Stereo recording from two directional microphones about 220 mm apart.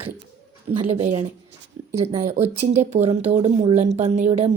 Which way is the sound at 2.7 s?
30° right (ahead or behind).